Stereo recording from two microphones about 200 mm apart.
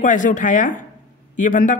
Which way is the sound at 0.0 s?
40° left (ahead or behind).